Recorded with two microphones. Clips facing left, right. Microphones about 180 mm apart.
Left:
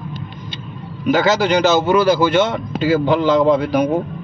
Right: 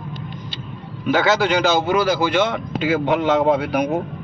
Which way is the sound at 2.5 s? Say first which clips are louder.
Left 3 dB; 35° left (ahead or behind).